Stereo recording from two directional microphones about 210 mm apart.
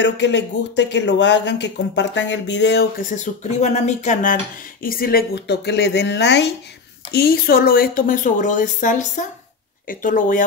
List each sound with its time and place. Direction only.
0.0 s speech: 55° left (ahead or behind); by 10.4 s 40° left (ahead or behind)